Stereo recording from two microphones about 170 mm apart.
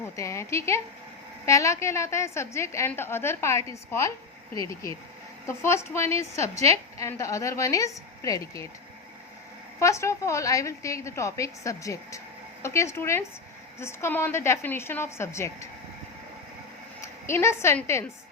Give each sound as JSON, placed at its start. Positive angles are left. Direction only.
{"t": 0.0, "sound": "a woman's voice", "side_deg": 15}
{"t": 9.8, "sound": "a woman's voice", "side_deg": 15}
{"t": 17.2, "sound": "a woman's voice", "side_deg": 15}